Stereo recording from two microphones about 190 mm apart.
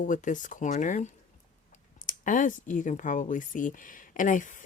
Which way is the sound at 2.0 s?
45° left (ahead or behind).